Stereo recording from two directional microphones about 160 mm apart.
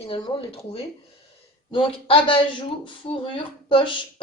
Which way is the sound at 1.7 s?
35° left (ahead or behind).